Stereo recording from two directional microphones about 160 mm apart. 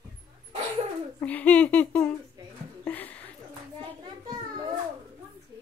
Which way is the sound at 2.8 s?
10° left (ahead or behind).